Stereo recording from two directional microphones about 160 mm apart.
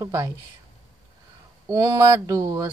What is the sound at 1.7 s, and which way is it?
Speech, 20° right (ahead or behind).